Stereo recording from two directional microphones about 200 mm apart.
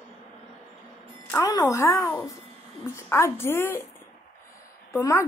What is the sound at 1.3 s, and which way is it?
Speech, 20° left (ahead or behind).